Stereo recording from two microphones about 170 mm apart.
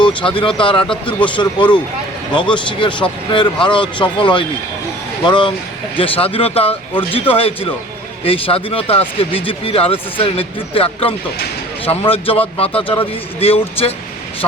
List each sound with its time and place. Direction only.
0.0 s speech: 30° left (ahead or behind)